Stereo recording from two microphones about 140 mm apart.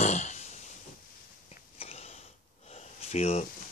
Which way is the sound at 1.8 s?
50° left (ahead or behind).